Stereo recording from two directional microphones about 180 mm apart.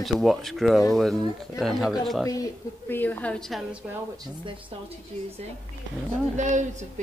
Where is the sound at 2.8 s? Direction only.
10° left (ahead or behind).